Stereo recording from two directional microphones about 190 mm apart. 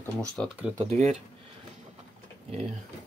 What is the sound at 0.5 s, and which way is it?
Speech, 10° right (ahead or behind).